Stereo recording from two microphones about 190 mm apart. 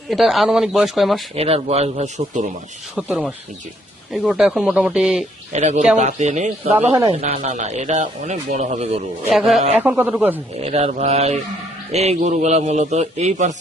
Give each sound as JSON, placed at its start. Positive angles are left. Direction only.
{"t": 0.1, "sound": "speech", "side_deg": 0}
{"t": 1.4, "sound": "speech", "side_deg": -30}
{"t": 2.9, "sound": "speech", "side_deg": -5}
{"t": 5.5, "sound": "speech", "side_deg": -35}
{"t": 9.3, "sound": "a man's voice", "side_deg": 0}
{"t": 10.6, "sound": "speech", "side_deg": -35}